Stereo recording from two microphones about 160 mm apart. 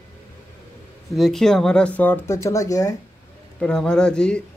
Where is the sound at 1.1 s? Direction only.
Centre (ahead or behind); by 2.9 s 20° left (ahead or behind).